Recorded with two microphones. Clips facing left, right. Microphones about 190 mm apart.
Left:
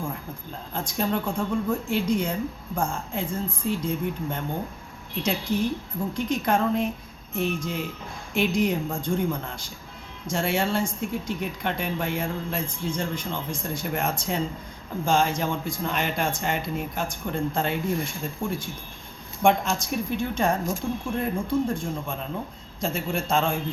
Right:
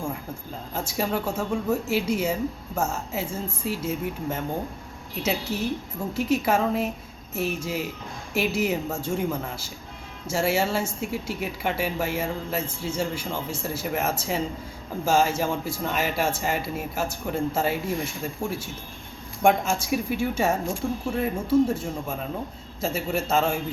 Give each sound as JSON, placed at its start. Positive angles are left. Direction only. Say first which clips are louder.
{"t": 0.7, "sound": "speech", "louder": "even", "side_deg": -5}